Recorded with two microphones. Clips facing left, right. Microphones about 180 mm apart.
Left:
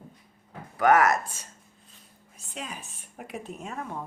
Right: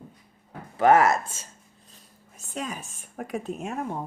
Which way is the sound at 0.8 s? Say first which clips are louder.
Right 2 dB; 25° right (ahead or behind).